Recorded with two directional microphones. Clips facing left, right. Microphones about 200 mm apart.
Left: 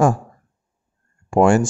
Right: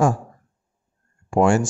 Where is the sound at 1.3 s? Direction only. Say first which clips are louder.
Left 3 dB; 55° left (ahead or behind).